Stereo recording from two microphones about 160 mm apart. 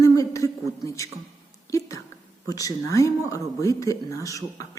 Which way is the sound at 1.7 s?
20° left (ahead or behind).